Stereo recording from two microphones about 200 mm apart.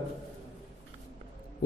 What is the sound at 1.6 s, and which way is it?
Music, 55° left (ahead or behind).